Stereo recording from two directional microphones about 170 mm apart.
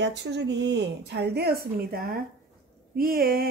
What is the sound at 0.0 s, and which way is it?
Speech, 85° right.